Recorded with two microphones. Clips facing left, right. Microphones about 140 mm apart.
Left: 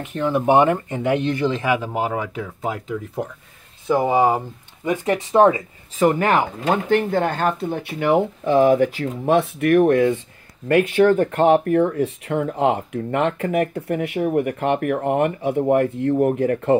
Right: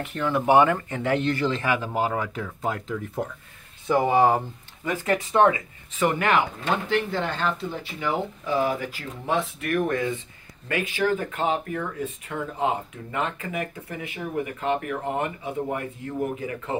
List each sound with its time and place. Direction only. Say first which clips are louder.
0.0 s speech: left 4 dB; 20° left (ahead or behind)
4.8 s speech: left 4 dB; 25° left (ahead or behind)
5.9 s speech: left 5 dB; 40° left (ahead or behind); by 16.7 s 60° left (ahead or behind)